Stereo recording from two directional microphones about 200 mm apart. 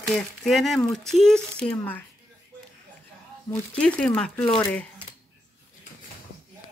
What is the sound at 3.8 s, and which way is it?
Speech, 5° left (ahead or behind).